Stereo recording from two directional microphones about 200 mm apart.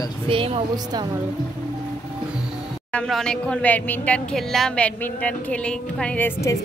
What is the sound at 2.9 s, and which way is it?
A woman's voice, 5° left (ahead or behind).